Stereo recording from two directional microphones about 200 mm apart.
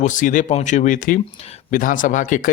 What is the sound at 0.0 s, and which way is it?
Speech, 40° left (ahead or behind).